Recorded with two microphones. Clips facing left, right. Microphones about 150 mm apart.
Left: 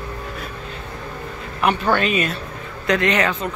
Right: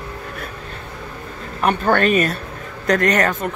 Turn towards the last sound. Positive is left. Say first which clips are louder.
# right 2 dB
turn(degrees=-45)  # may be behind; listen again after turning